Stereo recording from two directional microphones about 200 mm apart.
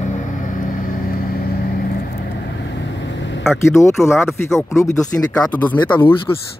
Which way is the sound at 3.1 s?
65° left (ahead or behind).